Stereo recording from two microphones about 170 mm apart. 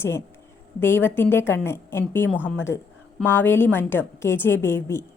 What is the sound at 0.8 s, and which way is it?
A woman's voice, 10° left (ahead or behind).